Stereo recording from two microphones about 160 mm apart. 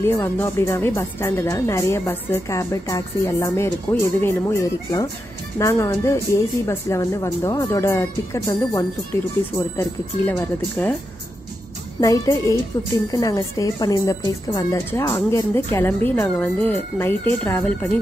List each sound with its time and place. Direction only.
0.0 s speech: 15° left (ahead or behind)
12.0 s a woman's voice: 20° left (ahead or behind)